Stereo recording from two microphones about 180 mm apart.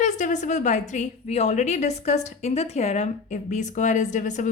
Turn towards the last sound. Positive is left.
turn(degrees=40)  # may be behind; listen again after turning